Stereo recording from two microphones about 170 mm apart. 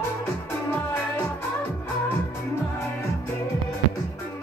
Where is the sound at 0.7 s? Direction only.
10° left (ahead or behind).